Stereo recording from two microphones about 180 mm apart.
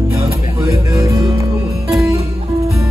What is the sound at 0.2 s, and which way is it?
Music, 15° right (ahead or behind).